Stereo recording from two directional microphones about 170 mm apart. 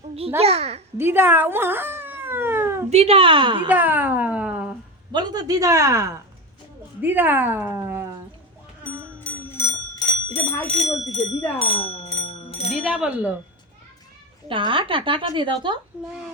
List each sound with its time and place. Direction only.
0.3 s a woman's voice: 35° right (ahead or behind)
0.9 s a sound: 15° right (ahead or behind)
2.9 s a woman's voice: 35° right (ahead or behind)
3.7 s speech: 10° right (ahead or behind)
5.1 s a woman's voice: 25° right (ahead or behind)
9.2 s clock: 15° left (ahead or behind)
10.8 s speech: centre (ahead or behind)
11.6 s a sound: 35° left (ahead or behind)
12.7 s speech: 5° right (ahead or behind)
14.4 s a woman's voice: 30° right (ahead or behind)